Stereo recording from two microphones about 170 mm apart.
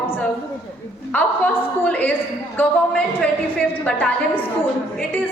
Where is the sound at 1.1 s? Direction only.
10° left (ahead or behind).